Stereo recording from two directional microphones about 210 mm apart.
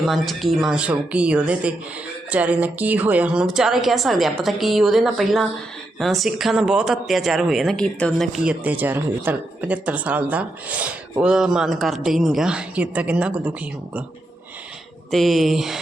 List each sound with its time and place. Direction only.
0.0 s speech: centre (ahead or behind)
15.1 s speech: centre (ahead or behind)